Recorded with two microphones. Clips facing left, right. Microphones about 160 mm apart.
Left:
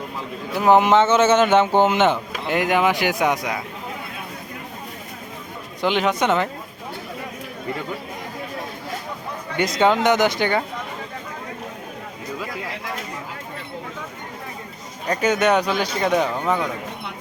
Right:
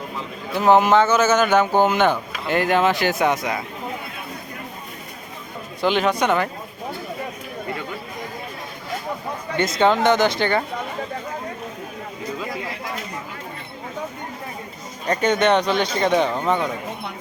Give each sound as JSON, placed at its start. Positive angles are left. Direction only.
{"t": 0.5, "sound": "speech", "side_deg": 15}
{"t": 5.8, "sound": "speech", "side_deg": 15}
{"t": 9.7, "sound": "speech", "side_deg": 15}
{"t": 15.0, "sound": "speech", "side_deg": 5}